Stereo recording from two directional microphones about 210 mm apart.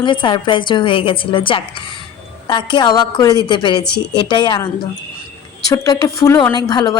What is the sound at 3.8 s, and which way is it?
Speech, 50° left (ahead or behind).